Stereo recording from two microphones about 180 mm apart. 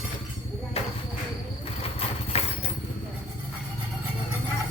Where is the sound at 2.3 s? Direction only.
35° left (ahead or behind).